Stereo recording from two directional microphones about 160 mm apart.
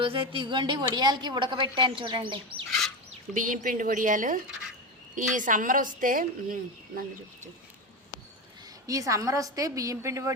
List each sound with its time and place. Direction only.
0.0 s a woman's voice: 35° right (ahead or behind)
3.3 s a woman's voice: 55° right (ahead or behind)
8.9 s a woman's voice: 20° right (ahead or behind)